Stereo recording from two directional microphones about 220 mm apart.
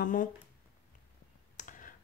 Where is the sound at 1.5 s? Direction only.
35° left (ahead or behind).